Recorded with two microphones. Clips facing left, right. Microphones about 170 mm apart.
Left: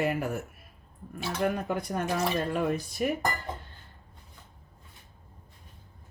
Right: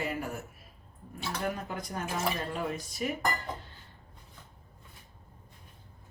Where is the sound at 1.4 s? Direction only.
60° left (ahead or behind).